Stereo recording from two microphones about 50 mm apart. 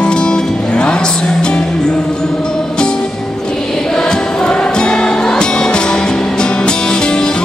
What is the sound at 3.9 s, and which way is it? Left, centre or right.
Music, centre.